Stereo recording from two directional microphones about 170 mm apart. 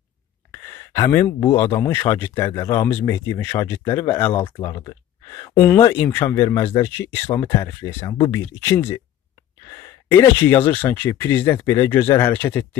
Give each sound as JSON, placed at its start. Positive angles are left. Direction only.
{"t": 0.5, "sound": "speech", "side_deg": 20}
{"t": 4.6, "sound": "speech", "side_deg": 25}